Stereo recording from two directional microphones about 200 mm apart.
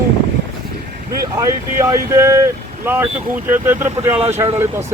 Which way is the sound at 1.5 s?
15° right (ahead or behind).